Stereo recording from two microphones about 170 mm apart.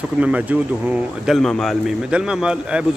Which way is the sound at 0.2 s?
10° right (ahead or behind).